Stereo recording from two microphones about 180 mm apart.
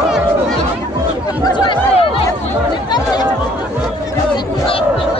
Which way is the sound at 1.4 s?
25° left (ahead or behind).